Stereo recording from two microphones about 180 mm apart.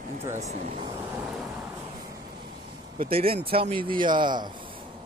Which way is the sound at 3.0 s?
30° right (ahead or behind).